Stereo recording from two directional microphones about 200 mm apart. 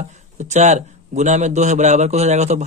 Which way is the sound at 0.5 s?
35° right (ahead or behind).